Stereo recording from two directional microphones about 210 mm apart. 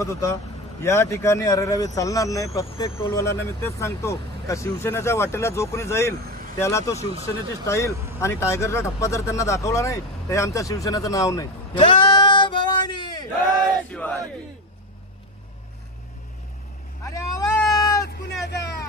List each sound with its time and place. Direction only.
0.0 s speech: 15° left (ahead or behind)
13.8 s battle cry: 5° left (ahead or behind)
17.0 s cat: 15° left (ahead or behind)
18.0 s a sound: 50° left (ahead or behind)